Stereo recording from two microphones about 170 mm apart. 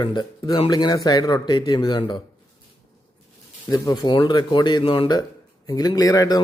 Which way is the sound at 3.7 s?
20° left (ahead or behind).